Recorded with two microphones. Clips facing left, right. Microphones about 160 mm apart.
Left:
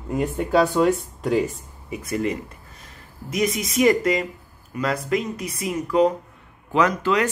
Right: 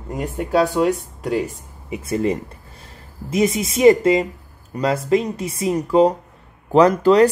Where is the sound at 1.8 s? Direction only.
25° right (ahead or behind).